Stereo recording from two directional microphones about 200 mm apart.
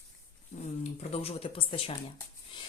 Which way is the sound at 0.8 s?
30° left (ahead or behind).